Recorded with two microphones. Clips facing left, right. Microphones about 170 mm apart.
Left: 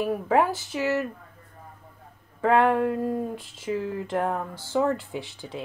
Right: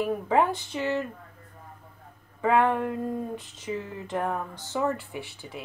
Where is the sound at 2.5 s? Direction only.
15° left (ahead or behind).